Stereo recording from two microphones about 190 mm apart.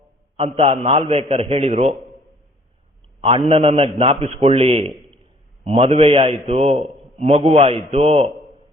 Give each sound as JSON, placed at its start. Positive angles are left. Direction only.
{"t": 0.3, "sound": "a man's voice", "side_deg": -30}
{"t": 3.2, "sound": "a man's voice", "side_deg": -30}